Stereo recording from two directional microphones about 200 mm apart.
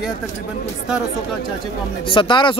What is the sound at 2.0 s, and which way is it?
Speech, 25° left (ahead or behind).